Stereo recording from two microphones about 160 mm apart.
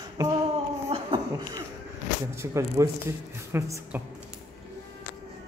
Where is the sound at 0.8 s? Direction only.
35° right (ahead or behind).